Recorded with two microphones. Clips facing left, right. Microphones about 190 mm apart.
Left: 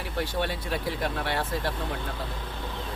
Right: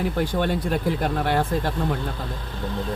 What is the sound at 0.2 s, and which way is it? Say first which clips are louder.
Speech: right 2 dB; 45° right (ahead or behind).